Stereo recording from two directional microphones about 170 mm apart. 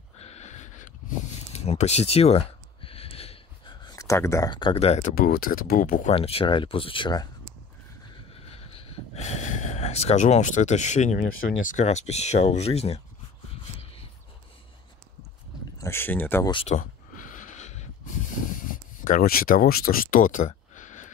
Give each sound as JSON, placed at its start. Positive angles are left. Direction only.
{"t": 0.2, "sound": "a sound", "side_deg": 40}
{"t": 5.1, "sound": "speech", "side_deg": 60}
{"t": 6.1, "sound": "speech", "side_deg": 35}
{"t": 8.3, "sound": "speech", "side_deg": 35}
{"t": 15.8, "sound": "speech", "side_deg": 15}
{"t": 16.6, "sound": "a sound", "side_deg": 45}
{"t": 19.0, "sound": "speech", "side_deg": 55}